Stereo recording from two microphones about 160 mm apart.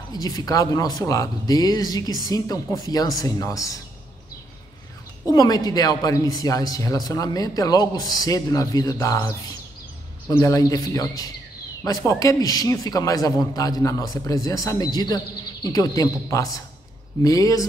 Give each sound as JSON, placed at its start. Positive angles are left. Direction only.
{"t": 0.1, "sound": "speech", "side_deg": 20}
{"t": 5.2, "sound": "speech", "side_deg": 20}
{"t": 10.3, "sound": "speech", "side_deg": 20}